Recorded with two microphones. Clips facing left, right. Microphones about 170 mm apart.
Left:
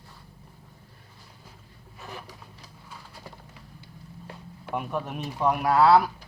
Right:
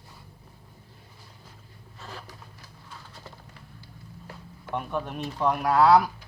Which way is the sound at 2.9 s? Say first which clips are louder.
Left 1 dB; 10° left (ahead or behind).